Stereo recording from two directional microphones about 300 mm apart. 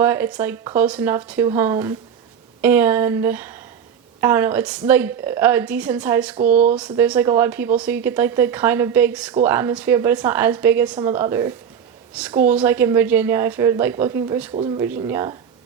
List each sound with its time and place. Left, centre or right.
0.0 s a woman's voice: centre
14.5 s a woman's voice: centre